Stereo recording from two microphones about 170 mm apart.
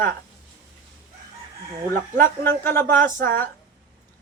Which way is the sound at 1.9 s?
15° left (ahead or behind).